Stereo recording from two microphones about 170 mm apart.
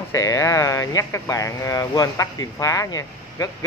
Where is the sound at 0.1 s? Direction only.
20° left (ahead or behind).